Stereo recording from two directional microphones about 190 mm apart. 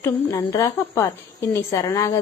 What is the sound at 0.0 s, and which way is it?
A woman's voice, 15° left (ahead or behind).